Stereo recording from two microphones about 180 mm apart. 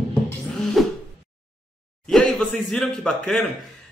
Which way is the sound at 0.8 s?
Centre (ahead or behind).